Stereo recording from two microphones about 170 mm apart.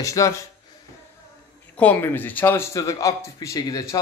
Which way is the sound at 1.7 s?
10° left (ahead or behind).